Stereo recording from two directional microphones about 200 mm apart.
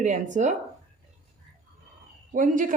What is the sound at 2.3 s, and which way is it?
Speech, 40° right (ahead or behind).